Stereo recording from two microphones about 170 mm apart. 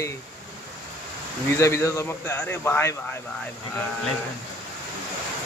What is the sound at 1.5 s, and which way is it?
A man's voice, 15° left (ahead or behind).